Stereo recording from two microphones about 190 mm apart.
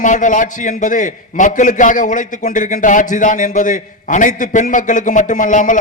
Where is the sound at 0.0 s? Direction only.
40° left (ahead or behind).